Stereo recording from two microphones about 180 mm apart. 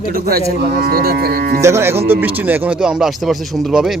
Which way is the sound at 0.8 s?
55° right (ahead or behind).